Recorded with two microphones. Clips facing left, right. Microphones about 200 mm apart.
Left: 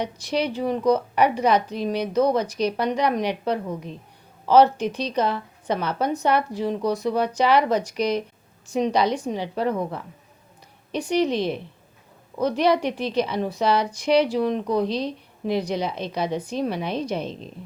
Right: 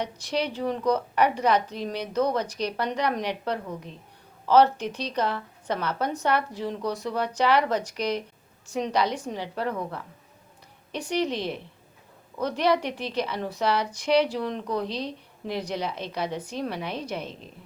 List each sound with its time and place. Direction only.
0.0 s a woman's voice: 15° left (ahead or behind)